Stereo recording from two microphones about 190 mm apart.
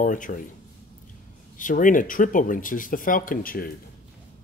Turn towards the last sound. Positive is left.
turn(degrees=50)  # may be behind; listen again after turning